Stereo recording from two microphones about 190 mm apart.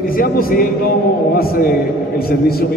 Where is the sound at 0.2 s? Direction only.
50° left (ahead or behind).